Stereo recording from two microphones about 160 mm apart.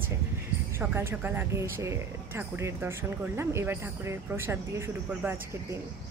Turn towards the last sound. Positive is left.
turn(degrees=-15)  # may be behind; listen again after turning